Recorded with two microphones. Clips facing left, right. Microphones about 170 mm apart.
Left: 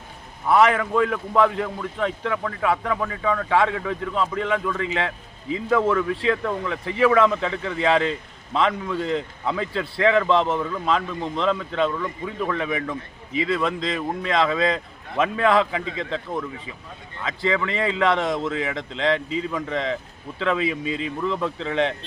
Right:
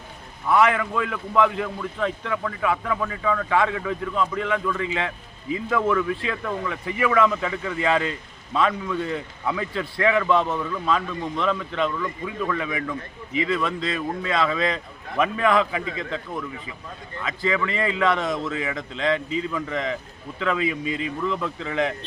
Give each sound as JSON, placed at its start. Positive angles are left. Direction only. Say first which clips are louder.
{"t": 0.5, "sound": "a man's voice", "louder": "left 2 dB", "side_deg": 25}